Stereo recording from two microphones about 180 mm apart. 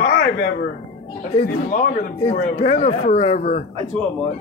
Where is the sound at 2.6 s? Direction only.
35° left (ahead or behind).